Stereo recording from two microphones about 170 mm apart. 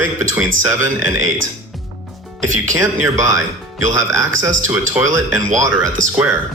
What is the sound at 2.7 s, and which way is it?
Speech, 20° right (ahead or behind).